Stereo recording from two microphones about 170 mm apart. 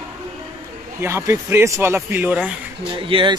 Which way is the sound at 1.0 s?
15° right (ahead or behind).